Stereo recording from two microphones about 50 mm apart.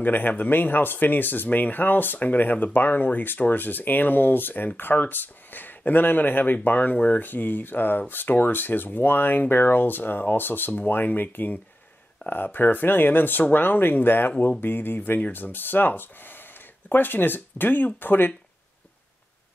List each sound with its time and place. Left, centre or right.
0.0 s speech: left